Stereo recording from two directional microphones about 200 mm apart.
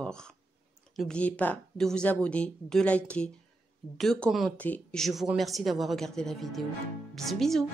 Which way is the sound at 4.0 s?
Centre (ahead or behind).